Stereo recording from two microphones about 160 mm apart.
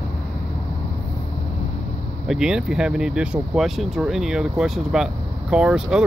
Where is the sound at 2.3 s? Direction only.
5° right (ahead or behind).